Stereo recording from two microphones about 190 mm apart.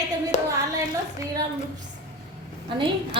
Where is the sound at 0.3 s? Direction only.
40° left (ahead or behind).